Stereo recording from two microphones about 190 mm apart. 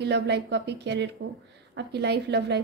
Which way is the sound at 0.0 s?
65° right (ahead or behind).